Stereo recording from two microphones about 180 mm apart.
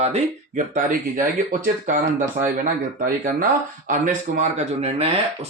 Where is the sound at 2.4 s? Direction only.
45° right (ahead or behind).